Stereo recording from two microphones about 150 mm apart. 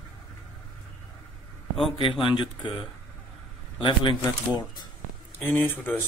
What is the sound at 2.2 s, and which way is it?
Speech, 35° left (ahead or behind).